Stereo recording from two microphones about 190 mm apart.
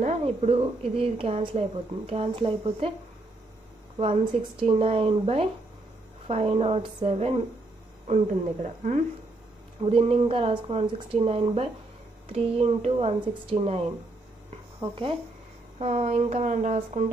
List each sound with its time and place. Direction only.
0.0 s a woman's voice: 35° right (ahead or behind)
4.0 s a woman's voice: 25° right (ahead or behind)
8.6 s a woman's voice: 40° right (ahead or behind)